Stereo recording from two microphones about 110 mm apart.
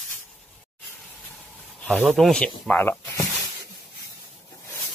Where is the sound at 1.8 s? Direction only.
Centre (ahead or behind).